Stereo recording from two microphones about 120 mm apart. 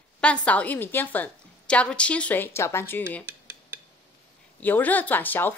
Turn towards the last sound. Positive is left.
turn(degrees=15)  # may be behind; listen again after turning